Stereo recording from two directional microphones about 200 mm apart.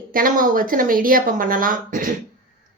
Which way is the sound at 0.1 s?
45° right (ahead or behind).